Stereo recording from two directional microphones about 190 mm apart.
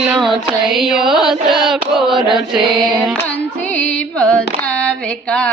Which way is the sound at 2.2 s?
25° right (ahead or behind).